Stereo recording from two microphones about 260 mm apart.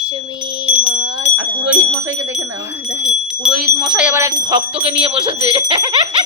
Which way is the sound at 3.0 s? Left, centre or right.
Centre.